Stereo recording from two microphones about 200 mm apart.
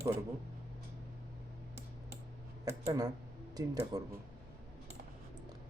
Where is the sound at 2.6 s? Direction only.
15° right (ahead or behind).